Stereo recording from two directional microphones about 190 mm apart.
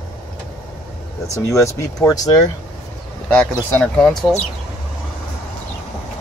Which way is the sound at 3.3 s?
5° left (ahead or behind).